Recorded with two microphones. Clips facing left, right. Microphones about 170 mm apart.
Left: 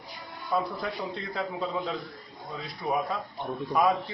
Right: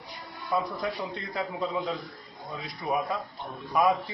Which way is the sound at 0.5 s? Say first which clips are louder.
Even; centre (ahead or behind).